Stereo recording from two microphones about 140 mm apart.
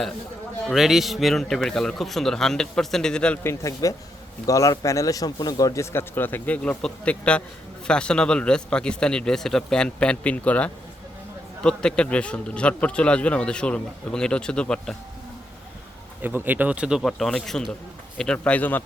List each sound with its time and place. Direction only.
0.7 s speech: centre (ahead or behind)
3.4 s a man's voice: 20° left (ahead or behind); by 14.9 s 5° left (ahead or behind)
16.2 s speech: 15° right (ahead or behind); by 18.8 s 10° left (ahead or behind)